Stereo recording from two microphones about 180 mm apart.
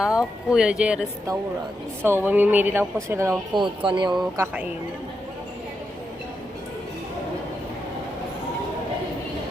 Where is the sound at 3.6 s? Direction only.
25° right (ahead or behind).